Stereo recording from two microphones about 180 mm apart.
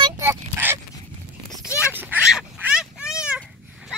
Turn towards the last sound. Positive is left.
turn(degrees=-5)  # may be behind; listen again after turning